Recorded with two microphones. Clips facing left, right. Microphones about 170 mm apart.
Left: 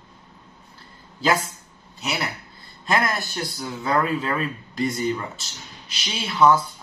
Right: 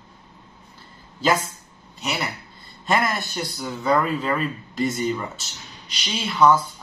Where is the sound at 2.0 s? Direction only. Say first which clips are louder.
Even; centre (ahead or behind).